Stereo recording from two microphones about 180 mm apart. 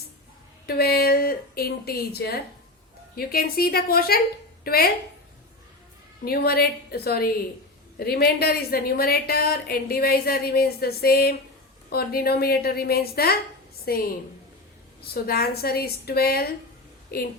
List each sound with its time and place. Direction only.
0.7 s a woman's voice: 60° left (ahead or behind)
6.2 s a woman's voice: 60° left (ahead or behind)
15.0 s a woman's voice: 60° left (ahead or behind)